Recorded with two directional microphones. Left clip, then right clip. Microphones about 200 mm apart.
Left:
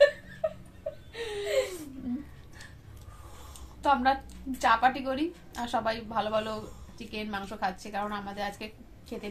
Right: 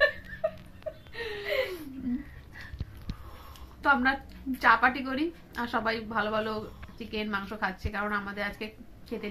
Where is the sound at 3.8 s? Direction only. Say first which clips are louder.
Even; centre (ahead or behind).